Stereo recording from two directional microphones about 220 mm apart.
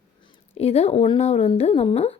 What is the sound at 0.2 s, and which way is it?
Speech, 25° left (ahead or behind).